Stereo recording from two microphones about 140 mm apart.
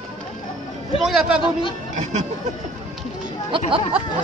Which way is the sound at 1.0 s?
5° right (ahead or behind).